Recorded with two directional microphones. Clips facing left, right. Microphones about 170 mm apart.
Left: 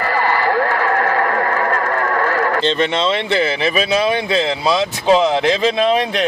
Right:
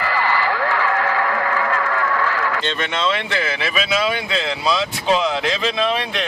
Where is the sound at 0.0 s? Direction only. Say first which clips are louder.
Left 3 dB; 50° left (ahead or behind).